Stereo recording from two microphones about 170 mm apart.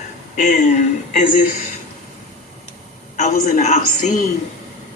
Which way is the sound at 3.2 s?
45° left (ahead or behind).